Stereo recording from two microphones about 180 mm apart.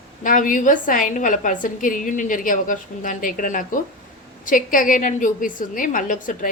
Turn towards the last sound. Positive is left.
turn(degrees=45)  # may be behind; listen again after turning